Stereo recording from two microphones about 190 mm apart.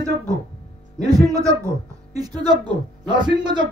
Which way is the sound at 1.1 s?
15° right (ahead or behind).